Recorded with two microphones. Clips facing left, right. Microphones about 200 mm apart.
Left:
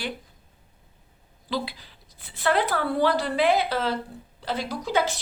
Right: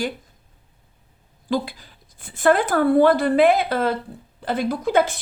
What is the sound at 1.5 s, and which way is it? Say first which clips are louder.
A woman's voice: right 6 dB; 45° right (ahead or behind).